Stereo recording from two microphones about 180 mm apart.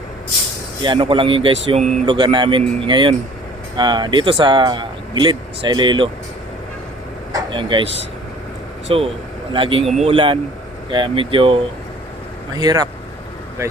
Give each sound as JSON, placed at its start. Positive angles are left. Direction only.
{"t": 0.8, "sound": "speech", "side_deg": -25}
{"t": 7.3, "sound": "vehicle", "side_deg": -25}
{"t": 8.9, "sound": "speech", "side_deg": -30}
{"t": 9.9, "sound": "speech", "side_deg": -40}
{"t": 10.9, "sound": "speech", "side_deg": -30}